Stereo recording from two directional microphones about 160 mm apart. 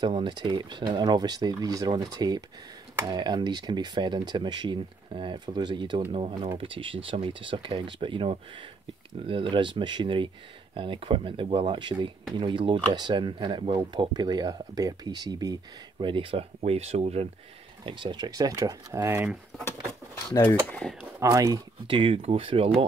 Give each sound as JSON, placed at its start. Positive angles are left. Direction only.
{"t": 0.0, "sound": "speech", "side_deg": -30}
{"t": 17.8, "sound": "speech", "side_deg": -30}
{"t": 21.0, "sound": "speech", "side_deg": -20}
{"t": 21.9, "sound": "speech", "side_deg": -35}